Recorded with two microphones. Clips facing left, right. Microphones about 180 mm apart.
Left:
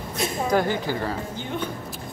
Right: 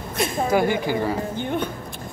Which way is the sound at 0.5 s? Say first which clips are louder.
Right 2 dB; 10° right (ahead or behind).